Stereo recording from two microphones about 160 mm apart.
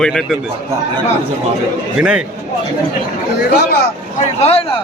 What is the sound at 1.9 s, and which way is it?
Speech, 5° right (ahead or behind).